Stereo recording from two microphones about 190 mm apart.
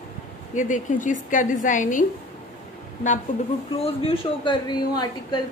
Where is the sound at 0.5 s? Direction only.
40° left (ahead or behind).